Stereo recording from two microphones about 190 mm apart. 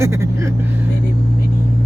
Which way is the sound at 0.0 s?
15° right (ahead or behind).